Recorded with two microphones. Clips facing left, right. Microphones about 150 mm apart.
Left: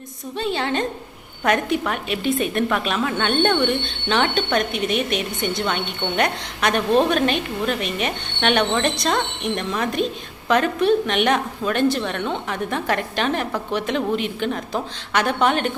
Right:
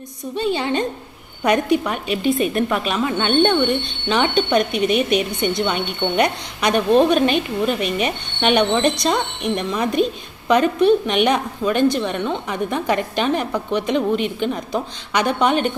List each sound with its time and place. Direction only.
0.3 s speech: centre (ahead or behind)